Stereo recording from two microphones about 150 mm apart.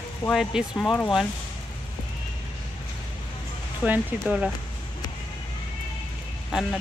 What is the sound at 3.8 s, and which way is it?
Speech, 5° right (ahead or behind).